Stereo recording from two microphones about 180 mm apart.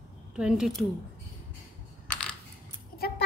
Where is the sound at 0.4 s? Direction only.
5° right (ahead or behind).